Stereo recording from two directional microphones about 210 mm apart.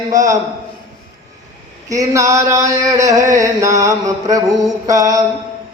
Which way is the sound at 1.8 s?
15° right (ahead or behind).